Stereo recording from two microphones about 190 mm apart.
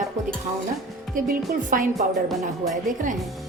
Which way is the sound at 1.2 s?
45° right (ahead or behind).